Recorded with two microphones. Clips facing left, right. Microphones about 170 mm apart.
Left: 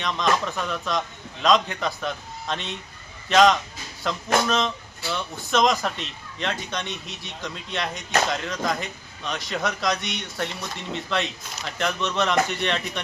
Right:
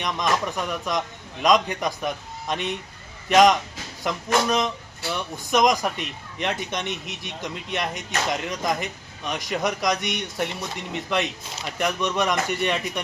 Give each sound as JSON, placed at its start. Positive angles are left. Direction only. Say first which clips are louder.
{"t": 0.0, "sound": "speech", "louder": "left 1 dB", "side_deg": -15}